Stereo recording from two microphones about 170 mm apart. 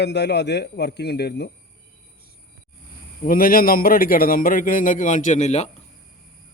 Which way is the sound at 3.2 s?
55° left (ahead or behind).